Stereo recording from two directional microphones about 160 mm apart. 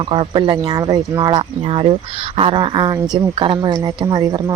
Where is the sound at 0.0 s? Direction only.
30° right (ahead or behind).